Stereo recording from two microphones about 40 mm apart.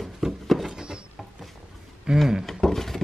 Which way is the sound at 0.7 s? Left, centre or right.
Right.